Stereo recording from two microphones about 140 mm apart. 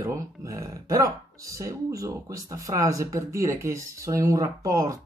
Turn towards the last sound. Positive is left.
turn(degrees=-25)  # may be behind; listen again after turning